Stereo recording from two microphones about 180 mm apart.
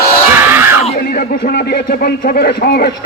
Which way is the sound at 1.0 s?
55° left (ahead or behind).